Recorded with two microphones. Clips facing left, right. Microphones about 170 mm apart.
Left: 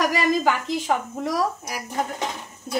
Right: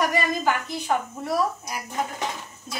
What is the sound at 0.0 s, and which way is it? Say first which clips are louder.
A woman's voice: left 3 dB; 90° left.